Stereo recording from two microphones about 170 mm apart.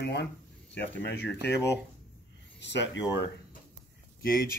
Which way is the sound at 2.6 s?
90° left.